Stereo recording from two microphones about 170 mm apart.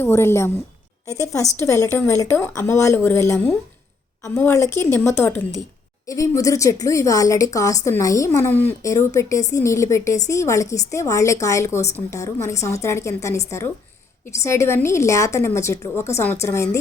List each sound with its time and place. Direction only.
0.0 s a woman's voice: 15° left (ahead or behind)
14.4 s a woman's voice: 15° left (ahead or behind)